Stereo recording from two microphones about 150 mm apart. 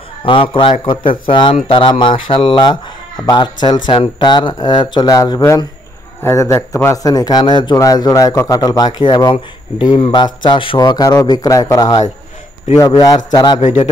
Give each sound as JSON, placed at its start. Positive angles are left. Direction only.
{"t": 0.2, "sound": "a man's voice", "side_deg": 35}
{"t": 13.6, "sound": "a man's voice", "side_deg": 50}